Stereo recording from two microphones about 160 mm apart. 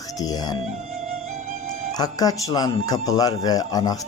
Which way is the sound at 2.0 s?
25° left (ahead or behind).